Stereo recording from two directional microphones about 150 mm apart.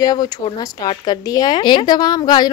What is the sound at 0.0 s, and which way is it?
Speech, 25° left (ahead or behind).